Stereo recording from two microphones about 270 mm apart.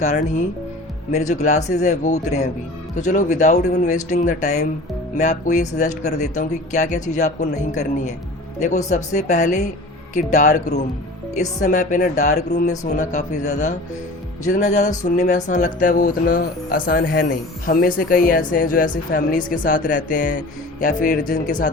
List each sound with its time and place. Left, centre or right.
0.0 s speech: left